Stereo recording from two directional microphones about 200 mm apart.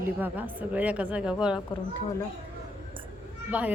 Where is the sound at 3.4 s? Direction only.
5° right (ahead or behind).